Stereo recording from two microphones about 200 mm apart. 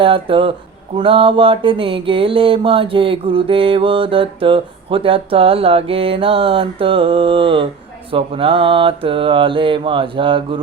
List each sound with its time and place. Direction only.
0.0 s mantra: 25° right (ahead or behind)